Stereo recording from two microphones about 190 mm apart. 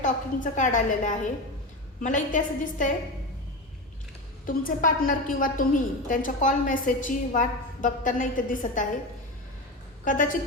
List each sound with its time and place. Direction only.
0.0 s a woman's voice: 40° left (ahead or behind)
4.4 s a woman's voice: 45° left (ahead or behind)
10.0 s a woman's voice: 45° left (ahead or behind)